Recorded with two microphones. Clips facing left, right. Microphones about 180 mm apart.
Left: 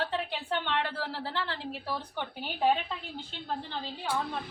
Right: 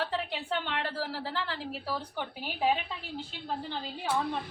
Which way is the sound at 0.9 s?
40° right (ahead or behind).